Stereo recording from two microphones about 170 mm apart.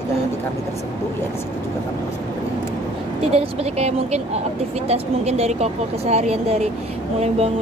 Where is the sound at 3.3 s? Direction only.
40° right (ahead or behind).